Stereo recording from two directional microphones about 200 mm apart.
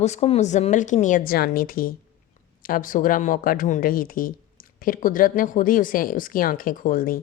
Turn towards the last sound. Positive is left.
turn(degrees=45)  # may be behind; listen again after turning